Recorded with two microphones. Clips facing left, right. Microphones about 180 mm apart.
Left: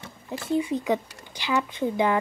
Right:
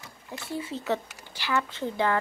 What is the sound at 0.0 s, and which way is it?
Speech, 20° left (ahead or behind).